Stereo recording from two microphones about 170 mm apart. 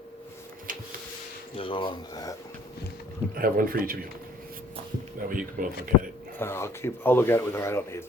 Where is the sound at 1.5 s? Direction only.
30° left (ahead or behind).